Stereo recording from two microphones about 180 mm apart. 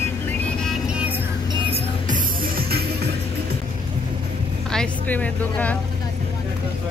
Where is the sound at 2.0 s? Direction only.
50° right (ahead or behind).